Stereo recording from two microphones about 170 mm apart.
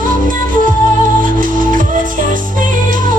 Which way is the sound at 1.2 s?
50° right (ahead or behind).